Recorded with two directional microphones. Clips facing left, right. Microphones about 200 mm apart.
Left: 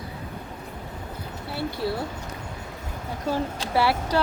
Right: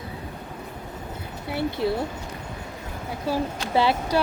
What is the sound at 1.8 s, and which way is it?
Speech, 20° right (ahead or behind).